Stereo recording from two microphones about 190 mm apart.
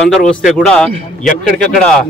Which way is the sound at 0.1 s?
Centre (ahead or behind).